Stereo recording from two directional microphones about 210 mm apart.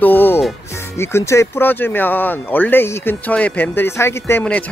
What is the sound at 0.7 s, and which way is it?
Speech, 10° left (ahead or behind).